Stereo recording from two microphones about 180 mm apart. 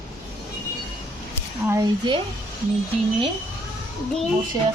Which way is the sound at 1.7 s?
20° right (ahead or behind).